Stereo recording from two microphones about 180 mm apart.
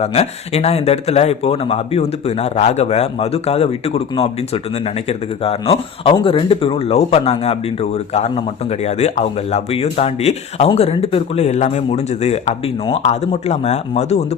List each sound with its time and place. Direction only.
0.0 s speech: 35° left (ahead or behind)